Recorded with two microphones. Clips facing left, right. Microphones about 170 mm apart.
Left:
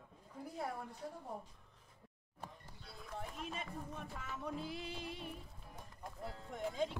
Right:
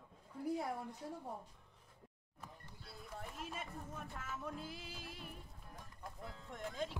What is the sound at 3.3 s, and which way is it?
Music, 5° right (ahead or behind).